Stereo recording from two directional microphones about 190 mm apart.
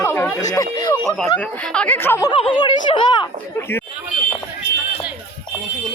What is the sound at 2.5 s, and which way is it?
Speech, 25° left (ahead or behind).